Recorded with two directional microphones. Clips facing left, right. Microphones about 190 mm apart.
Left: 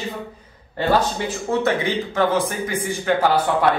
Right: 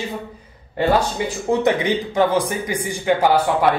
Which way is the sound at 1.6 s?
15° right (ahead or behind).